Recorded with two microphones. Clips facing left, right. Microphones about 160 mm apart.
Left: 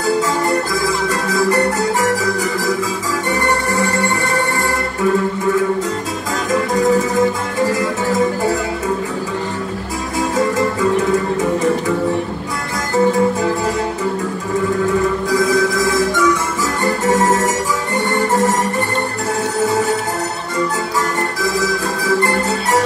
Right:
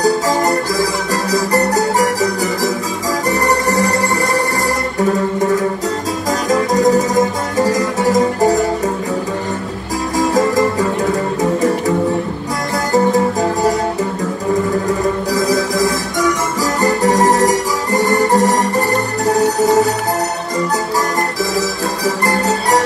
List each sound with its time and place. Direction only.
0.0 s music: 40° right (ahead or behind)
6.5 s music: 40° right (ahead or behind)
10.1 s music: 35° right (ahead or behind)
12.9 s music: 40° right (ahead or behind)
15.3 s music: 40° right (ahead or behind)
21.4 s music: 40° right (ahead or behind)